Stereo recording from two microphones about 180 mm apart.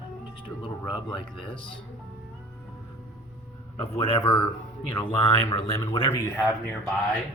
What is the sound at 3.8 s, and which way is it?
A man's voice, 30° left (ahead or behind).